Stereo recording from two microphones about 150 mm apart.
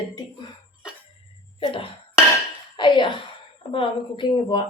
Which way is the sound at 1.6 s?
35° left (ahead or behind).